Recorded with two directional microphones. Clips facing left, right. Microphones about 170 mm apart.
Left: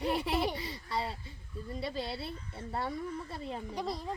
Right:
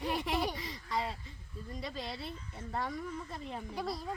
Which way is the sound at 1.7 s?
30° left (ahead or behind).